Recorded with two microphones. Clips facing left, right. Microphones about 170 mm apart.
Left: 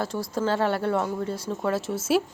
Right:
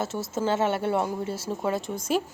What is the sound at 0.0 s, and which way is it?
Speech, 25° right (ahead or behind).